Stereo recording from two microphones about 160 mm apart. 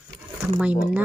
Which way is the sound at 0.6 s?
5° right (ahead or behind).